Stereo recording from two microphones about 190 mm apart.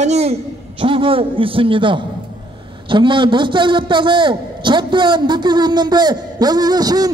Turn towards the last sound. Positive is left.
turn(degrees=-20)  # may be behind; listen again after turning